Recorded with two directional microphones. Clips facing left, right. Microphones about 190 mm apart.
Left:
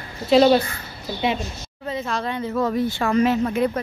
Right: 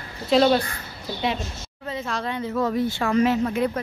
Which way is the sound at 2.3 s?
45° left (ahead or behind).